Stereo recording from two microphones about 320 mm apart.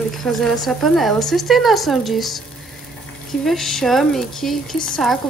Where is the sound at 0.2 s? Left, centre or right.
Centre.